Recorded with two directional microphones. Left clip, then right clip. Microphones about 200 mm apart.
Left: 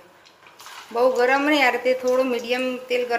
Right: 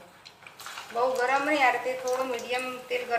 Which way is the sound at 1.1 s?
45° left (ahead or behind).